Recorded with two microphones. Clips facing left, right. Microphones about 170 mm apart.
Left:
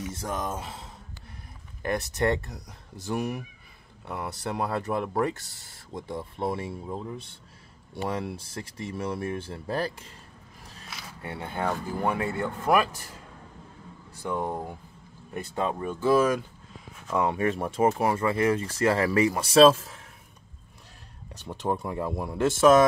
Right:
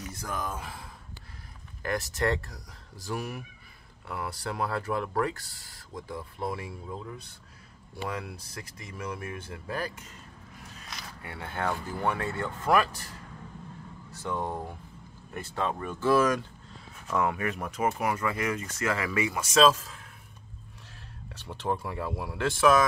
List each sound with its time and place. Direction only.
0.1 s speech: 25° left (ahead or behind)
11.2 s speech: 20° left (ahead or behind)
14.1 s speech: 15° left (ahead or behind)
17.1 s speech: 25° left (ahead or behind)
21.5 s speech: 15° left (ahead or behind)